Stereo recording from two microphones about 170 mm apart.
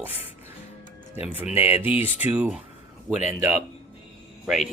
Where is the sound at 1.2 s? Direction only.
10° right (ahead or behind).